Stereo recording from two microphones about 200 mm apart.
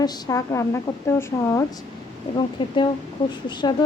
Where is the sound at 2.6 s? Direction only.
25° left (ahead or behind).